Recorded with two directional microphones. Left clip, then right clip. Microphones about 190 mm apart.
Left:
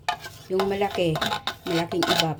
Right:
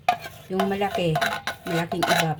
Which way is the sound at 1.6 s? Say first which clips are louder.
Left 1 dB; 20° left (ahead or behind).